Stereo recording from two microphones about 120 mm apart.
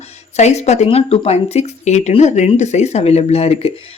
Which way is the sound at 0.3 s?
70° left (ahead or behind).